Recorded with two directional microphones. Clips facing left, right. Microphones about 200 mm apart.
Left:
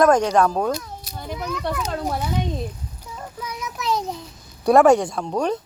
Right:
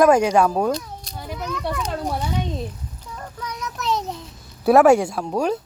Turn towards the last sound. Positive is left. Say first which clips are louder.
# right 1 dB
turn(degrees=-5)  # may be behind; listen again after turning